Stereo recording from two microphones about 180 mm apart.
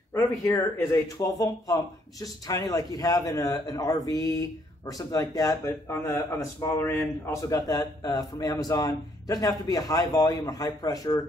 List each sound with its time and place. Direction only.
0.1 s speech: 15° left (ahead or behind)